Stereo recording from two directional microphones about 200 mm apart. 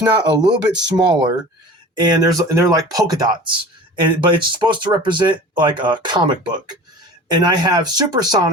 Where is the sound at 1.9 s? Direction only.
20° right (ahead or behind).